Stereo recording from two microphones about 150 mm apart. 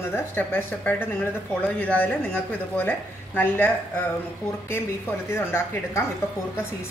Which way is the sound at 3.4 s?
15° left (ahead or behind).